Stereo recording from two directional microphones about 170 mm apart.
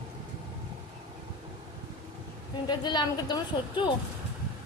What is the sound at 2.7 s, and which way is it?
A woman's voice, 25° left (ahead or behind).